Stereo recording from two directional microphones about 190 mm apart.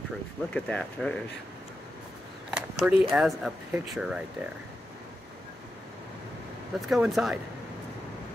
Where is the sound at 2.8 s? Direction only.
Centre (ahead or behind).